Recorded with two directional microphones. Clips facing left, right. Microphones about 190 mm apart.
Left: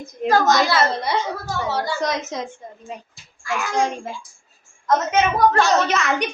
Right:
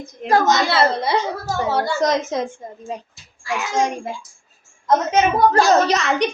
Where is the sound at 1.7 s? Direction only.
50° right (ahead or behind).